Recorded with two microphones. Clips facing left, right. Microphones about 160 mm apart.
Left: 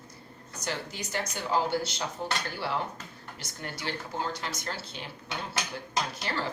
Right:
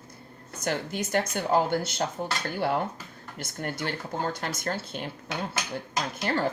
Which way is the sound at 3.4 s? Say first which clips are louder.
Right 7 dB; 50° right (ahead or behind).